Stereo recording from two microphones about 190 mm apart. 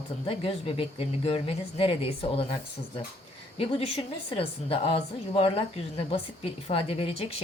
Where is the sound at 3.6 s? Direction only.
30° left (ahead or behind).